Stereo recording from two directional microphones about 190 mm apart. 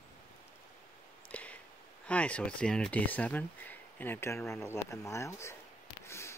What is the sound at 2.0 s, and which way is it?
Speech, 5° left (ahead or behind).